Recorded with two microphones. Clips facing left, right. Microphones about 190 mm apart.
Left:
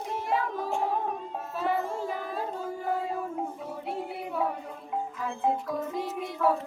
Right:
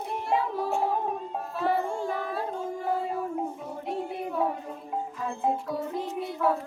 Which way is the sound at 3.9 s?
5° left (ahead or behind).